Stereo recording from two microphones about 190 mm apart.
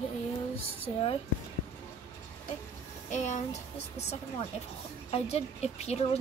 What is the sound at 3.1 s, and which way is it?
A woman's voice, 40° left (ahead or behind).